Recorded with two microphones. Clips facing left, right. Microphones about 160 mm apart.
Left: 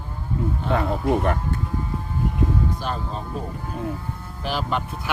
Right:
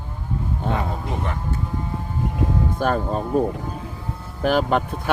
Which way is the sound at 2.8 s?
50° right (ahead or behind).